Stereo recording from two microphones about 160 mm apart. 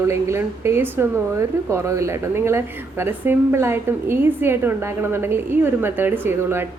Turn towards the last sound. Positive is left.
turn(degrees=-15)  # may be behind; listen again after turning